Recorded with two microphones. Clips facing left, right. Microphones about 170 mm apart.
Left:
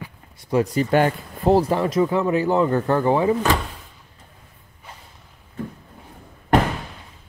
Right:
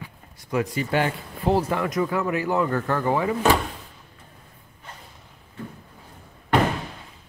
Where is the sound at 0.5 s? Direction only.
35° left (ahead or behind).